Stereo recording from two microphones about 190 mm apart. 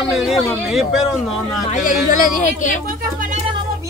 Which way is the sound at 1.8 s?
45° left (ahead or behind).